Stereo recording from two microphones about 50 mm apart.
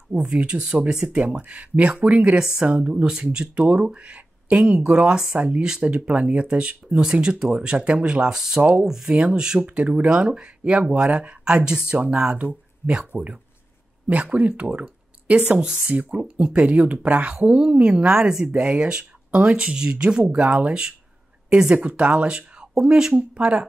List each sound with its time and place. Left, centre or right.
0.1 s speech: right
5.9 s speech: right
9.6 s speech: right
10.0 s speech: centre
15.9 s speech: right
21.7 s speech: right
23.1 s speech: right